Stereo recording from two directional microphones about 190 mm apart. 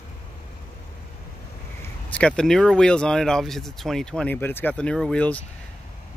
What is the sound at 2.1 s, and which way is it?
Speech, 5° left (ahead or behind).